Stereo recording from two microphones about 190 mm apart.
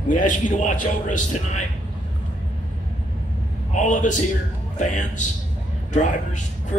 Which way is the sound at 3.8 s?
40° left (ahead or behind).